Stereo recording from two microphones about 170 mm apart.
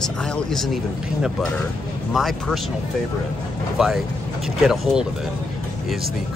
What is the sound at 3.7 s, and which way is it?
Speech, centre (ahead or behind).